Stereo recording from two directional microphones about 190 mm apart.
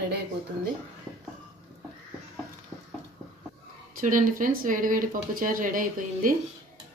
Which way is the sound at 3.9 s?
45° right (ahead or behind).